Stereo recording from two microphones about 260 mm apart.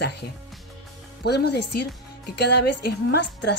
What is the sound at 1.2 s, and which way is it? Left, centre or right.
A woman's voice, left.